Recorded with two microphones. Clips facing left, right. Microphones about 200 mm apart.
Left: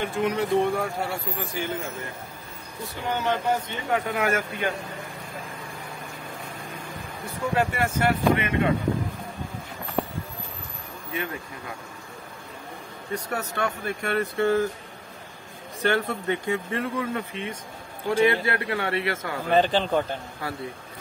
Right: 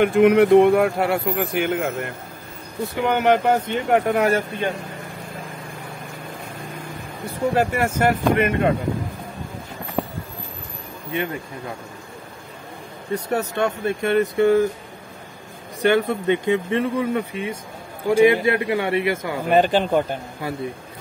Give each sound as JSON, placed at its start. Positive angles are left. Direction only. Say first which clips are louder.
{"t": 0.0, "sound": "speech", "louder": "right 11 dB", "side_deg": -65}
{"t": 7.5, "sound": "speech", "louder": "right 2 dB", "side_deg": -45}
{"t": 13.1, "sound": "speech", "louder": "right 7 dB", "side_deg": -25}
{"t": 15.8, "sound": "speech", "louder": "right 6 dB", "side_deg": -20}